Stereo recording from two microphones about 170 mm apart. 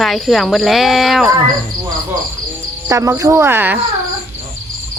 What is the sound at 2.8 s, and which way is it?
Speech, 20° right (ahead or behind).